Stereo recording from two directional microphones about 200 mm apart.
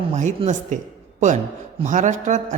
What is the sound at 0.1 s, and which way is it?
Speech, 35° right (ahead or behind).